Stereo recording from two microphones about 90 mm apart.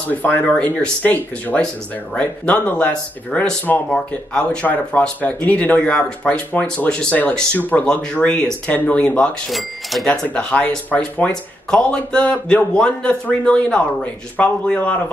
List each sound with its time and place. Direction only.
0.1 s speech: 20° left (ahead or behind)
9.5 s speech: centre (ahead or behind)
10.2 s speech: 15° left (ahead or behind)